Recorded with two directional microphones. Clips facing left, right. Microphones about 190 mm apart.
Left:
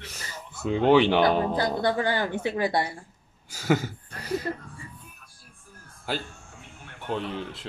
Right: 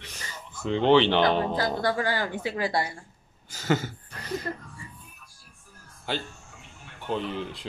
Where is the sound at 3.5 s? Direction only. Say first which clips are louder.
Left 2 dB; 10° left (ahead or behind).